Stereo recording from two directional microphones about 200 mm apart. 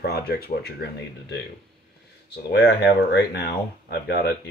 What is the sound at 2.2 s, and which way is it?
Speech, 55° left (ahead or behind).